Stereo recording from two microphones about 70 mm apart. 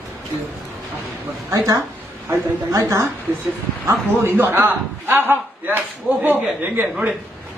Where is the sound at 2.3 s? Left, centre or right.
Right; by 7.1 s centre.